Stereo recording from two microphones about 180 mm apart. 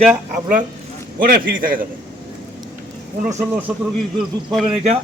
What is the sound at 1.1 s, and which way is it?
Speech, 50° right (ahead or behind).